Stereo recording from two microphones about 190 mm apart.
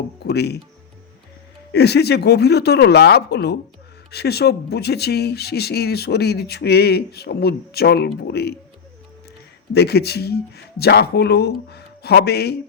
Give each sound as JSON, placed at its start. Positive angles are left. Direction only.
{"t": 0.3, "sound": "speech", "side_deg": 60}
{"t": 1.7, "sound": "speech", "side_deg": 60}
{"t": 9.7, "sound": "speech", "side_deg": 60}